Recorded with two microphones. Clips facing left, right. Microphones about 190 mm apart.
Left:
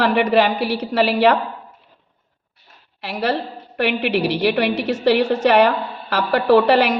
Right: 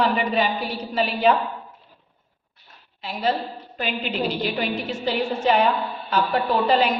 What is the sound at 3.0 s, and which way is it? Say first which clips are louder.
A woman's voice: left 3 dB; 75° left (ahead or behind).